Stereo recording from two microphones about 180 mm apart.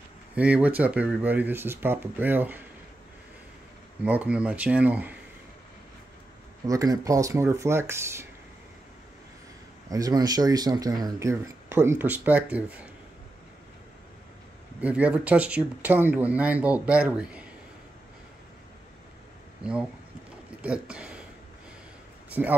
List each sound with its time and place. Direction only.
0.4 s speech: 10° right (ahead or behind)
4.0 s speech: 10° right (ahead or behind)
6.6 s speech: 20° right (ahead or behind)
9.8 s speech: 20° right (ahead or behind)
14.8 s speech: 10° right (ahead or behind)
19.6 s speech: 5° right (ahead or behind)
22.3 s speech: 10° right (ahead or behind)